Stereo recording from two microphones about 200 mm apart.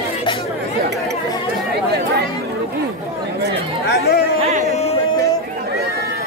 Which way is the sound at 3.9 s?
50° left (ahead or behind).